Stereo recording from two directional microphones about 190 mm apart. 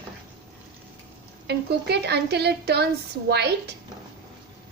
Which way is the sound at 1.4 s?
60° right (ahead or behind).